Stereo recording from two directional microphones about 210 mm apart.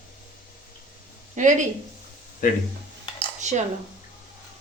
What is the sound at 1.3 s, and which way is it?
Speech, 35° right (ahead or behind).